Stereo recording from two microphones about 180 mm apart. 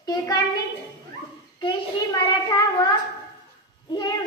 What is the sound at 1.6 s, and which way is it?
Speech, 25° left (ahead or behind).